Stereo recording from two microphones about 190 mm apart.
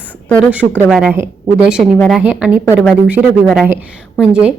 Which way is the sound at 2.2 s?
5° right (ahead or behind).